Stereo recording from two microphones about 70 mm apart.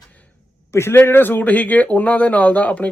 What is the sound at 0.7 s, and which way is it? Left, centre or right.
Speech, left.